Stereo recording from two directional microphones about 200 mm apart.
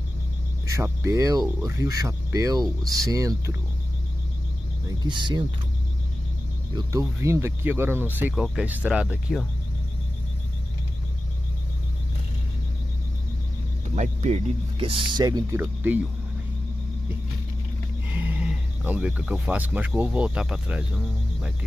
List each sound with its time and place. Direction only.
0.7 s speech: 15° right (ahead or behind)
4.8 s speech: 25° right (ahead or behind)
6.7 s speech: 20° right (ahead or behind); by 9.5 s centre (ahead or behind)
13.9 s speech: 35° right (ahead or behind); by 16.0 s 10° right (ahead or behind)
18.1 s speech: 10° right (ahead or behind)